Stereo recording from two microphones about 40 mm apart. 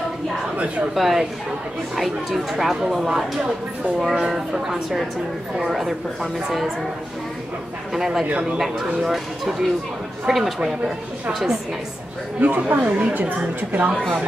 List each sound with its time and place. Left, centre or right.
0.9 s speech: centre
7.9 s speech: centre
12.4 s a woman's voice: right